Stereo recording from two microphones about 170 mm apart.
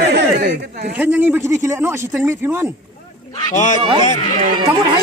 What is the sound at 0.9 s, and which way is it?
Speech, 10° right (ahead or behind).